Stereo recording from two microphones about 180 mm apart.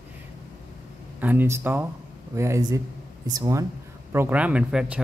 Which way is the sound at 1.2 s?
10° right (ahead or behind).